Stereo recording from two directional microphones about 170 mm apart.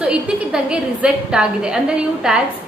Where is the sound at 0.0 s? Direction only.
5° right (ahead or behind).